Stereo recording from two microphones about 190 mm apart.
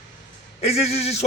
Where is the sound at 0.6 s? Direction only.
35° left (ahead or behind).